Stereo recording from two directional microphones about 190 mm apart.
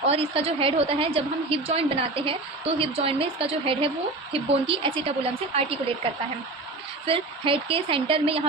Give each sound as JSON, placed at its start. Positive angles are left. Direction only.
{"t": 0.0, "sound": "a woman's voice", "side_deg": -30}
{"t": 7.0, "sound": "a woman's voice", "side_deg": -30}